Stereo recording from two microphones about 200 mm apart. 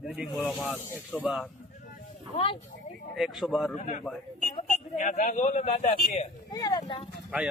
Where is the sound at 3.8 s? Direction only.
35° left (ahead or behind).